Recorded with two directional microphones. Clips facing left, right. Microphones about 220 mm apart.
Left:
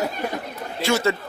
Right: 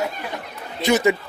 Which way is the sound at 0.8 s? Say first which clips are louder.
Right 3 dB; 15° right (ahead or behind).